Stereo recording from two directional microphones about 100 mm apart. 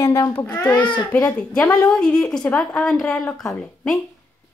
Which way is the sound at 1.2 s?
10° left (ahead or behind).